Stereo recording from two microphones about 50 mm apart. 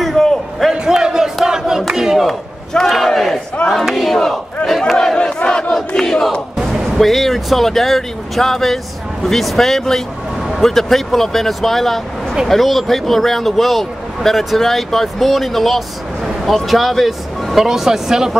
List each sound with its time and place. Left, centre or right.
0.0 s a sound: centre
0.7 s crowd: centre
2.2 s a man's voice: centre
5.8 s battle cry: centre
6.6 s music: centre
7.0 s a man's voice: centre